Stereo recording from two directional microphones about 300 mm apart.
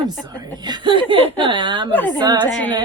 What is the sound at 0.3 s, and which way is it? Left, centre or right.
Speech, centre.